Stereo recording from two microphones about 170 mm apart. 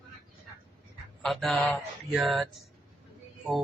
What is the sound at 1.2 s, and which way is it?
Speech, centre (ahead or behind).